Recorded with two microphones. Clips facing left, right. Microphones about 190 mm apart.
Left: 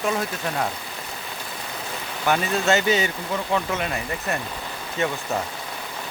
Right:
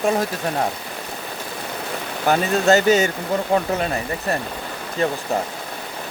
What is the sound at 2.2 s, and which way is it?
Speech, 40° right (ahead or behind).